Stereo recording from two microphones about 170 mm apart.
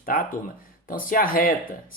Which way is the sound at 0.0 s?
55° left (ahead or behind).